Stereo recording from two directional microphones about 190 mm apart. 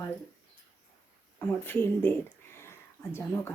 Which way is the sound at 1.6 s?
10° left (ahead or behind).